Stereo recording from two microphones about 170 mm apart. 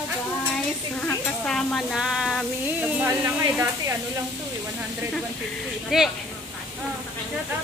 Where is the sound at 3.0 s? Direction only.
15° right (ahead or behind).